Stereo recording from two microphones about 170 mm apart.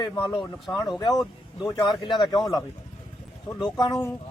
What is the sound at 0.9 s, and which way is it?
A man's voice, 20° left (ahead or behind).